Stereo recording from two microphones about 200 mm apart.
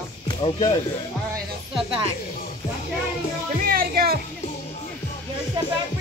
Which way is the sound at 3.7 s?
45° right (ahead or behind).